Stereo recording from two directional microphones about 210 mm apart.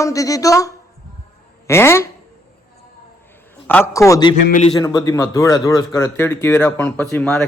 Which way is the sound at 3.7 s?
10° left (ahead or behind).